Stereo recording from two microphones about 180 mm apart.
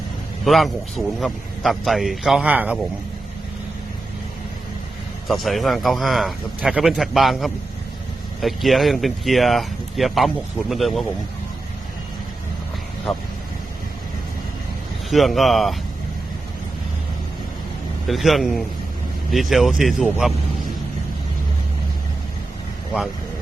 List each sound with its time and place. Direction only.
0.4 s speech: centre (ahead or behind)
5.3 s speech: centre (ahead or behind)
15.1 s speech: centre (ahead or behind)
18.1 s speech: centre (ahead or behind)